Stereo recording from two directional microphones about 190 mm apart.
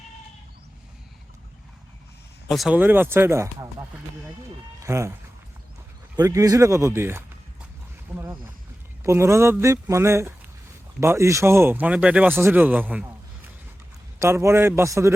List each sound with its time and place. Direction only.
2.5 s speech: centre (ahead or behind)
6.1 s speech: 15° right (ahead or behind)
8.1 s a sound: 10° right (ahead or behind)
9.0 s speech: 15° right (ahead or behind)
14.2 s speech: 15° right (ahead or behind)